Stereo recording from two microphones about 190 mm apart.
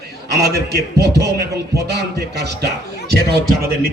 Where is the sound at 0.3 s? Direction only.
55° right (ahead or behind).